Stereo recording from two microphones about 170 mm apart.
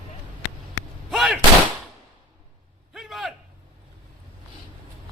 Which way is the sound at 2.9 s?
Centre (ahead or behind).